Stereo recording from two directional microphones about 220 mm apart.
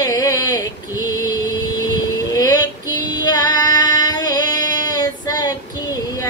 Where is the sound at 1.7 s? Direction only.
15° left (ahead or behind).